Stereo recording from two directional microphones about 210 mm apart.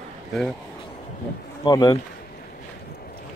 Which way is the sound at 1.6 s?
20° left (ahead or behind).